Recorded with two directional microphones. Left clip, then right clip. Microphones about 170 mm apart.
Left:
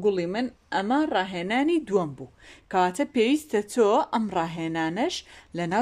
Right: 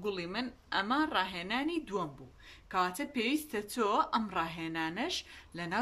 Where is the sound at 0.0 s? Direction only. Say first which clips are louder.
Left 12 dB; 45° left (ahead or behind).